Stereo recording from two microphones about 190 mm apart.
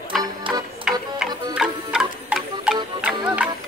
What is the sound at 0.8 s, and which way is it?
Music, 5° right (ahead or behind).